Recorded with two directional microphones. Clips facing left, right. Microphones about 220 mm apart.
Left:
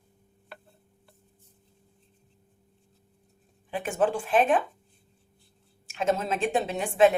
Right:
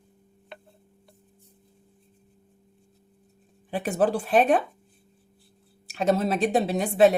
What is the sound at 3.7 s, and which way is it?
Speech, 35° right (ahead or behind).